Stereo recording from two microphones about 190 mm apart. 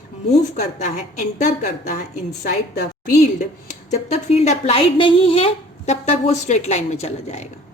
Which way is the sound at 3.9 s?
35° left (ahead or behind).